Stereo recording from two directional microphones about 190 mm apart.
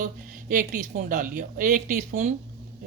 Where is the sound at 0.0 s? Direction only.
45° right (ahead or behind).